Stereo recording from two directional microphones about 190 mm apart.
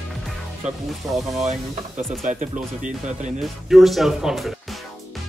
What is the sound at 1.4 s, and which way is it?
Speech, 40° right (ahead or behind).